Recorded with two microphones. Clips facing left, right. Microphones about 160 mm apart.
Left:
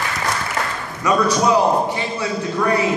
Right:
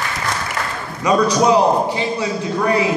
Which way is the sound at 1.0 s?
20° right (ahead or behind).